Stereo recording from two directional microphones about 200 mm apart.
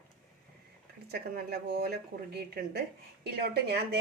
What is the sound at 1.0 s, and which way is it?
A woman's voice, 50° right (ahead or behind).